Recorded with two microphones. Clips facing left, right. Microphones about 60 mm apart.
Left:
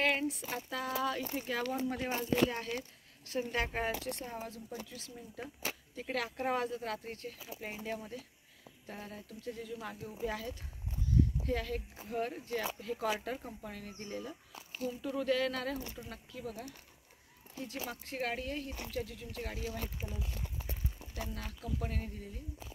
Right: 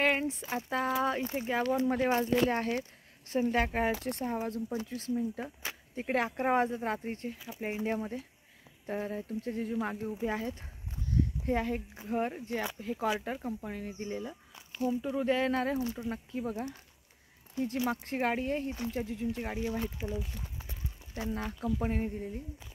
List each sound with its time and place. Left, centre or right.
0.0 s a sound: right
0.6 s speech: right
3.3 s speech: right
17.6 s speech: right
21.1 s speech: right